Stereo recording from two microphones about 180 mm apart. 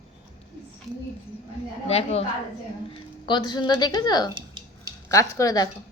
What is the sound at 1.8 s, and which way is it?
Speech, 35° left (ahead or behind).